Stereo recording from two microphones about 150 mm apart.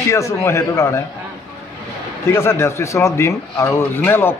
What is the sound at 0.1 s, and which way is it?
Speech, 20° left (ahead or behind).